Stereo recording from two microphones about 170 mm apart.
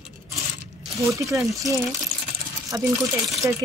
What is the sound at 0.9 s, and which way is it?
Speech, 20° right (ahead or behind).